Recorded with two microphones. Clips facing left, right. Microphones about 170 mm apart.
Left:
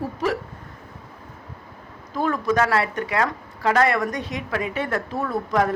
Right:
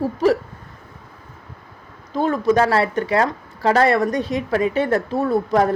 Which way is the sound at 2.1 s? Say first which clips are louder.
Right 4 dB; 25° right (ahead or behind).